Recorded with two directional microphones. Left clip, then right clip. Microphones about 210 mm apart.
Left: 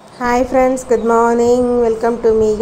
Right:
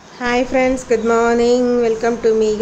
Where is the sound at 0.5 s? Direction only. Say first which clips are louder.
Left 3 dB; 5° right (ahead or behind).